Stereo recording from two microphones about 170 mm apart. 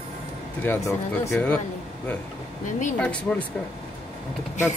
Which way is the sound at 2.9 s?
5° left (ahead or behind).